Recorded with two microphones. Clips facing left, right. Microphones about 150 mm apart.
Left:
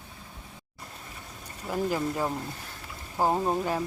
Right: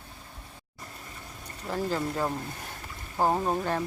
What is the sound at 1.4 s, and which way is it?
Speech, 10° left (ahead or behind).